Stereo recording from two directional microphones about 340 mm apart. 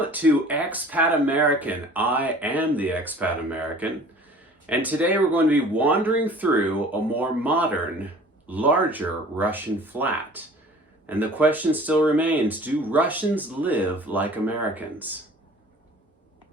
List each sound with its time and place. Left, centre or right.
0.0 s speech: centre